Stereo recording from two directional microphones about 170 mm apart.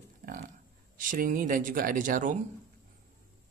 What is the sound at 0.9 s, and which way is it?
Speech, 55° right (ahead or behind).